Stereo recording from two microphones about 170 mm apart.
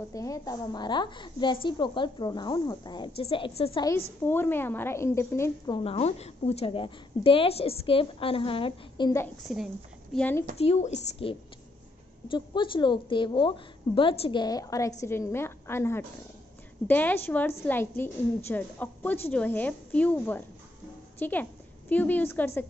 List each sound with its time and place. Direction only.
0.1 s a woman's voice: 20° left (ahead or behind)
4.2 s a woman's voice: 15° left (ahead or behind)
5.8 s a woman's voice: 35° left (ahead or behind)
9.5 s a woman's voice: centre (ahead or behind)
10.1 s a woman's voice: 10° left (ahead or behind)
10.6 s a woman's voice: 40° left (ahead or behind)
14.4 s a woman's voice: 20° left (ahead or behind)